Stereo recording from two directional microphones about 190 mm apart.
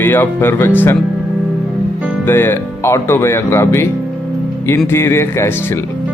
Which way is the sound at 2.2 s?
10° left (ahead or behind).